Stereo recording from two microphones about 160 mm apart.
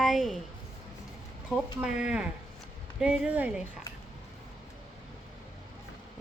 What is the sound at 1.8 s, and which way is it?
A woman's voice, 5° right (ahead or behind).